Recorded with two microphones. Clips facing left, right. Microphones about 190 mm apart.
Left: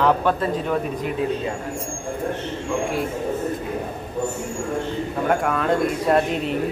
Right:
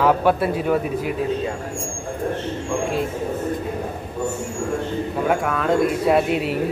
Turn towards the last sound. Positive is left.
turn(degrees=-5)  # may be behind; listen again after turning